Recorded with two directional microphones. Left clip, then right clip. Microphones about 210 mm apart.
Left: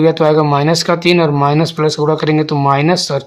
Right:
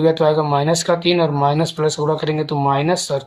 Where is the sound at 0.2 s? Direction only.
40° left (ahead or behind).